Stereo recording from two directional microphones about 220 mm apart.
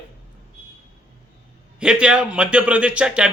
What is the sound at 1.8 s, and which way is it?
Speech, 5° right (ahead or behind).